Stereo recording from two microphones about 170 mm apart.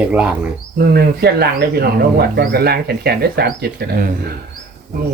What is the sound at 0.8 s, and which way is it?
Speech, 65° right (ahead or behind).